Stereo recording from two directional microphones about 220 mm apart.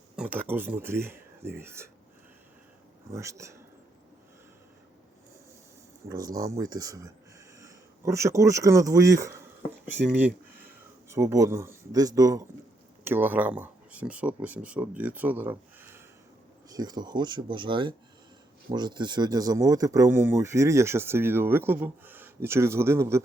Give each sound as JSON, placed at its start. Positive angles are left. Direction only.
{"t": 0.2, "sound": "speech", "side_deg": -10}
{"t": 3.1, "sound": "speech", "side_deg": -15}
{"t": 6.1, "sound": "speech", "side_deg": -15}